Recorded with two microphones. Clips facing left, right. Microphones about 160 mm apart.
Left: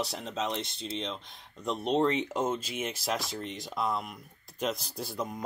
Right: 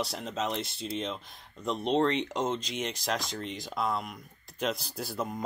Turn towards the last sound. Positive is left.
turn(degrees=0)  # may be behind; listen again after turning